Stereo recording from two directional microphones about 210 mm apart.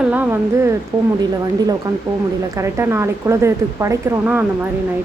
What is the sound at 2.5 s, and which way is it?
Speech, 10° right (ahead or behind).